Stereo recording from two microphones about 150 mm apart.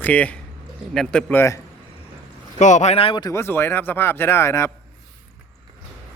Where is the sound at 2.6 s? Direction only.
55° left (ahead or behind); by 3.3 s 35° left (ahead or behind).